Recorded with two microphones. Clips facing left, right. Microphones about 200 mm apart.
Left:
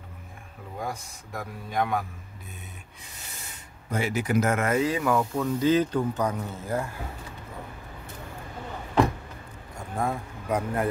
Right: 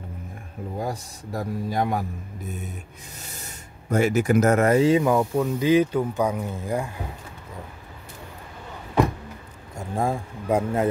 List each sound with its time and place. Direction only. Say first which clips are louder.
0.7 s a man's voice: right 3 dB; 35° right (ahead or behind)
3.9 s speech: right 6 dB; 45° right (ahead or behind); by 6.9 s 15° right (ahead or behind)
9.8 s speech: right 4 dB; 25° right (ahead or behind)